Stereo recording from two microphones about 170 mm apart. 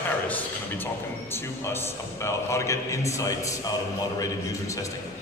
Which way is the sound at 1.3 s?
15° left (ahead or behind).